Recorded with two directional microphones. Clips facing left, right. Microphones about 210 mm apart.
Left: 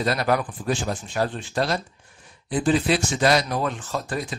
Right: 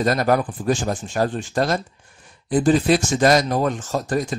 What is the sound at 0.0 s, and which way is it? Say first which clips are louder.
Speech: right 4 dB; 45° right (ahead or behind).